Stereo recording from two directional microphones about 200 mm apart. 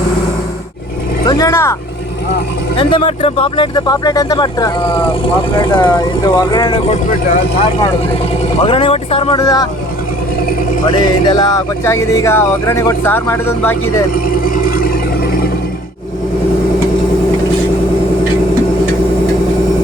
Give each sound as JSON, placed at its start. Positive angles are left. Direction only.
{"t": 1.3, "sound": "speech", "side_deg": 15}
{"t": 2.7, "sound": "speech", "side_deg": 25}
{"t": 8.6, "sound": "speech", "side_deg": 25}
{"t": 10.9, "sound": "speech", "side_deg": 20}
{"t": 14.4, "sound": "vehicle", "side_deg": 45}